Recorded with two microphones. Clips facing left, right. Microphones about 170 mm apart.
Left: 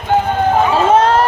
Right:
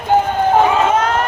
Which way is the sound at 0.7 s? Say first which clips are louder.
Left 4 dB; 30° left (ahead or behind).